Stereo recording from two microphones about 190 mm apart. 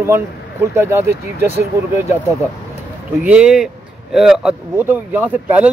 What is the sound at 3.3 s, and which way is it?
Speech, 5° right (ahead or behind).